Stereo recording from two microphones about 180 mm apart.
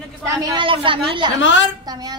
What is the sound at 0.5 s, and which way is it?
Speech, 30° right (ahead or behind).